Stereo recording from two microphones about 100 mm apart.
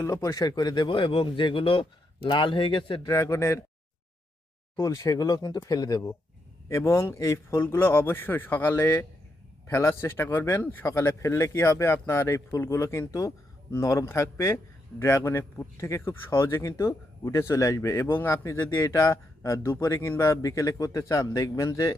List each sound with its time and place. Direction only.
0.0 s speech: 30° left (ahead or behind); by 3.1 s 55° left (ahead or behind)
3.1 s speech: 30° left (ahead or behind)
4.8 s speech: 35° left (ahead or behind)